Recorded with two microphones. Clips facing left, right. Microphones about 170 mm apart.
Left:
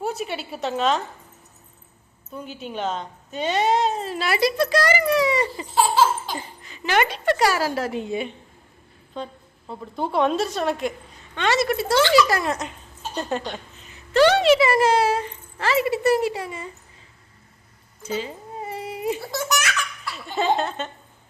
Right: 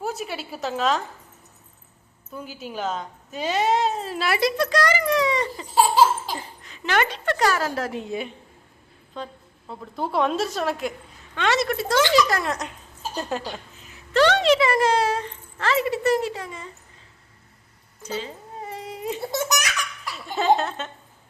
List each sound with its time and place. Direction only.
0.0 s speech: centre (ahead or behind)
2.3 s speech: 5° right (ahead or behind)
5.7 s laughter: 10° right (ahead or behind)
6.2 s speech: centre (ahead or behind)
18.0 s cat: 10° left (ahead or behind)
19.2 s laughter: 20° right (ahead or behind)
20.1 s speech: centre (ahead or behind)